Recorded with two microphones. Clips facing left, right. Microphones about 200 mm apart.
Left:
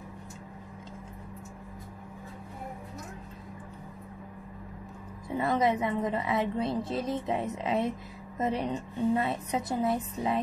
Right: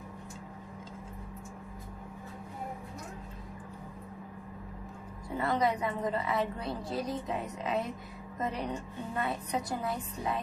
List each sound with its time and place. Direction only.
5.4 s a woman's voice: 20° left (ahead or behind)